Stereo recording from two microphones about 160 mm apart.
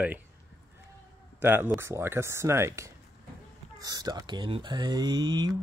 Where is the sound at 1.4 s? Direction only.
15° right (ahead or behind).